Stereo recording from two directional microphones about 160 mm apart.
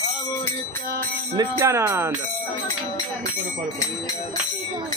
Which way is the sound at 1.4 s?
20° right (ahead or behind).